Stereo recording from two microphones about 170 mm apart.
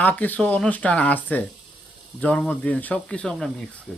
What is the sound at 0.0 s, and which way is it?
Speech, 10° left (ahead or behind).